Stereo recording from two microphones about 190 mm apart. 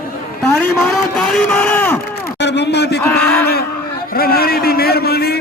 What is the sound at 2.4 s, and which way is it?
Speech, 65° left (ahead or behind).